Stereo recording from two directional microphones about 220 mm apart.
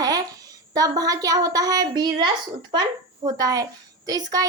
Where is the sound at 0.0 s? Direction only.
15° right (ahead or behind).